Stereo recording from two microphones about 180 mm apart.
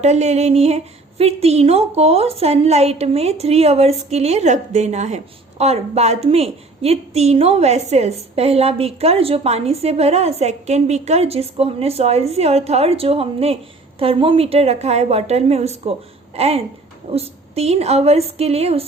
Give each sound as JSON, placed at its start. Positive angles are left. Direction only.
{"t": 0.0, "sound": "a woman's voice", "side_deg": -40}